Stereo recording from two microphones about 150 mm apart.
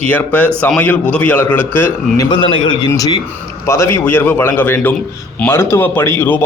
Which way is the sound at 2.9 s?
25° left (ahead or behind).